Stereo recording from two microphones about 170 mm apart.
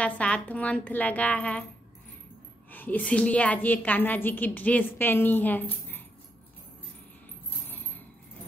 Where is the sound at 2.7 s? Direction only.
10° left (ahead or behind).